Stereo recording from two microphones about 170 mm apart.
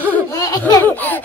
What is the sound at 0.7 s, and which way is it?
Baby laughter, 10° left (ahead or behind).